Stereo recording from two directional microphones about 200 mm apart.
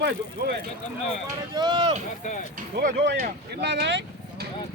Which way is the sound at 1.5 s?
20° right (ahead or behind).